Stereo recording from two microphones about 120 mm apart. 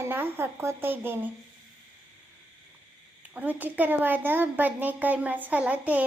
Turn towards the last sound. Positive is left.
turn(degrees=-15)  # may be behind; listen again after turning